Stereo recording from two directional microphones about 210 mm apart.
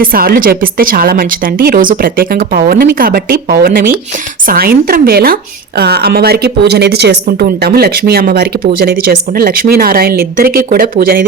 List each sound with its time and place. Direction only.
0.0 s speech: 45° right (ahead or behind)